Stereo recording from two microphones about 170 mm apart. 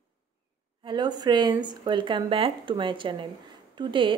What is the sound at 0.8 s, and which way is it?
A woman's voice, 25° right (ahead or behind).